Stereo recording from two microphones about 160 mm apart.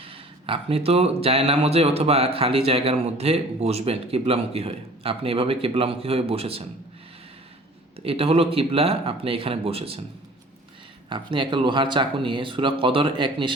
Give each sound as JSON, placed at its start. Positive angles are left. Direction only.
{"t": 0.0, "sound": "speech", "side_deg": -35}
{"t": 7.9, "sound": "speech", "side_deg": -35}
{"t": 11.1, "sound": "speech", "side_deg": -30}